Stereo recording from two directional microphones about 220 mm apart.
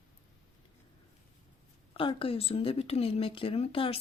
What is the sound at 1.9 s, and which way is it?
Speech, 25° left (ahead or behind).